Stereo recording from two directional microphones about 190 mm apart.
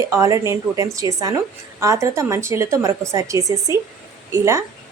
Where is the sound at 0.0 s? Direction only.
15° right (ahead or behind).